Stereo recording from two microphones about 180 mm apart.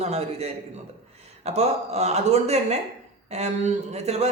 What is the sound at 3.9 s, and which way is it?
Speech, 35° right (ahead or behind).